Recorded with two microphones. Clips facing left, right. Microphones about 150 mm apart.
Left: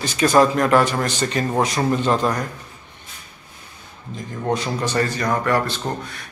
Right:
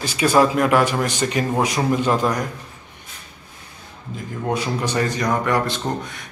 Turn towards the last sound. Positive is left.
turn(degrees=-20)  # may be behind; listen again after turning